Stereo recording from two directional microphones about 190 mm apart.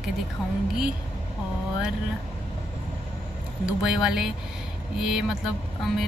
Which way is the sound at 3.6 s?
5° right (ahead or behind).